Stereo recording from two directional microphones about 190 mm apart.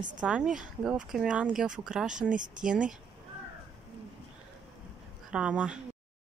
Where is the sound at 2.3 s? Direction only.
45° right (ahead or behind).